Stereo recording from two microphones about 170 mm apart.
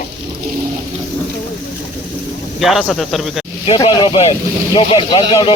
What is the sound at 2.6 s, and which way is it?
Speech, centre (ahead or behind).